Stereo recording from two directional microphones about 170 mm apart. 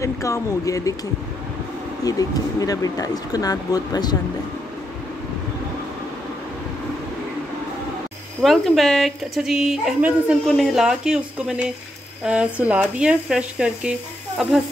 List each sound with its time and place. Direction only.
0.0 s speech: 15° left (ahead or behind)
2.0 s speech: 20° left (ahead or behind)
8.4 s speech: centre (ahead or behind)